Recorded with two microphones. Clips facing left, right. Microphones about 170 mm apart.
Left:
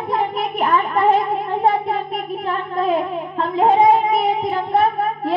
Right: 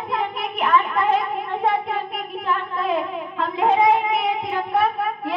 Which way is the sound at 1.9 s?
35° left (ahead or behind).